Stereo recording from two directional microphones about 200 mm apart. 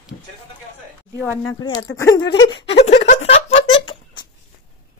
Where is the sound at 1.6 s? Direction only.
20° left (ahead or behind).